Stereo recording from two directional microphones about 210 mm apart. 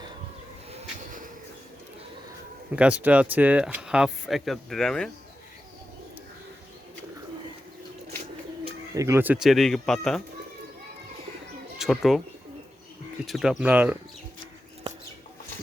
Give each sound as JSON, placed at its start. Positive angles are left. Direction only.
{"t": 0.7, "sound": "train", "side_deg": -30}
{"t": 2.7, "sound": "speech", "side_deg": -5}
{"t": 9.0, "sound": "speech", "side_deg": -15}
{"t": 11.8, "sound": "speech", "side_deg": 0}
{"t": 13.2, "sound": "speech", "side_deg": 0}